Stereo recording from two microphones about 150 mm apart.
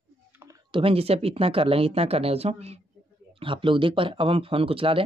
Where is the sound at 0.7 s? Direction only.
35° right (ahead or behind).